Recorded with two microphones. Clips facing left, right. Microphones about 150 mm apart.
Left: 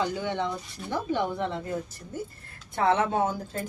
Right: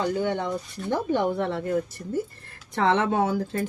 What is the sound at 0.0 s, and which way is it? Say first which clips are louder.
Speech: right 3 dB; 50° right (ahead or behind).